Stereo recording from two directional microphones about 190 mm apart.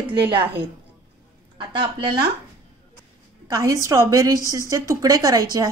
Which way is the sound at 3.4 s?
20° right (ahead or behind).